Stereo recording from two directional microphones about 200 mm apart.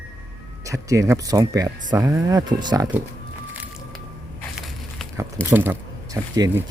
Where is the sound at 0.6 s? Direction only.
15° right (ahead or behind).